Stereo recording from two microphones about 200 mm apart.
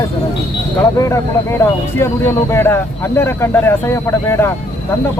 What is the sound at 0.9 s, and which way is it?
Speech, 15° left (ahead or behind).